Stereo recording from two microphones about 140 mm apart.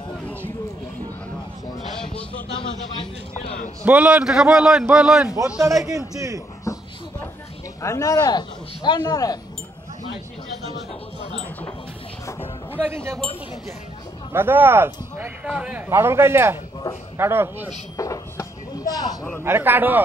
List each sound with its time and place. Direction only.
2.6 s speech: 40° left (ahead or behind)
3.8 s a man's voice: 10° right (ahead or behind)
5.9 s a man's voice: 25° right (ahead or behind)
6.6 s a sound: 20° left (ahead or behind)
7.8 s speech: 20° left (ahead or behind)
12.7 s a man's voice: 20° right (ahead or behind)
14.3 s speech: 15° right (ahead or behind)
17.9 s speech: 25° left (ahead or behind)
19.4 s speech: 15° right (ahead or behind)